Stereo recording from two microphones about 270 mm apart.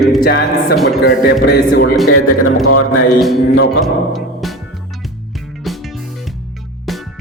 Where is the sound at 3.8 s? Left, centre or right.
Centre.